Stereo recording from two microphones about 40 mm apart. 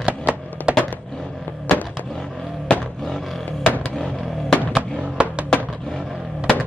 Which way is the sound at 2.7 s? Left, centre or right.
Left.